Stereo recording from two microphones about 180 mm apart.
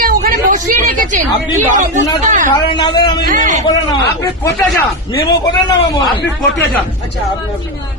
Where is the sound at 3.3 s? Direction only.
40° right (ahead or behind).